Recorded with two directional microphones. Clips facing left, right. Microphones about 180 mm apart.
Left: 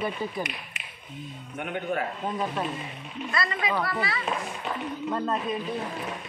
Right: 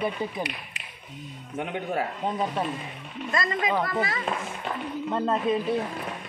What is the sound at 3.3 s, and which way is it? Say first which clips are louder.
Speech: right 2 dB; 40° right (ahead or behind).